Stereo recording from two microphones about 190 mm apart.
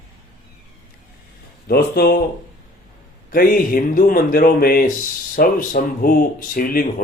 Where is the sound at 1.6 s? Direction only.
55° left (ahead or behind).